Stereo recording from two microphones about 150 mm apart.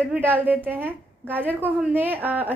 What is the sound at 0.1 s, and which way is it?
A woman's voice, 10° right (ahead or behind).